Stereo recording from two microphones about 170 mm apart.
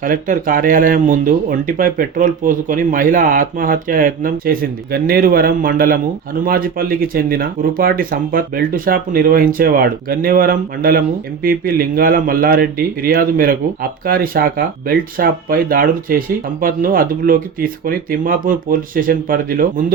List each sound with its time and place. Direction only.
0.0 s speech: 55° right (ahead or behind)